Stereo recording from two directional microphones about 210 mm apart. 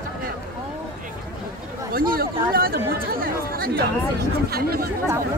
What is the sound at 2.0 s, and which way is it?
Speech, 45° right (ahead or behind).